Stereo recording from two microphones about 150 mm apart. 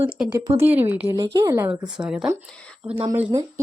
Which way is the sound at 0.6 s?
15° right (ahead or behind).